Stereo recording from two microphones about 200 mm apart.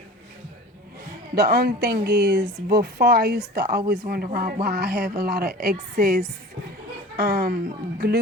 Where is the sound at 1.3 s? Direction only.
50° right (ahead or behind).